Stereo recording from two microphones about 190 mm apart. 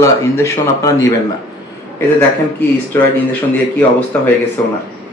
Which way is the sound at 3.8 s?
10° left (ahead or behind).